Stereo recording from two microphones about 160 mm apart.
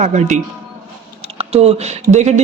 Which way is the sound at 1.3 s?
40° right (ahead or behind).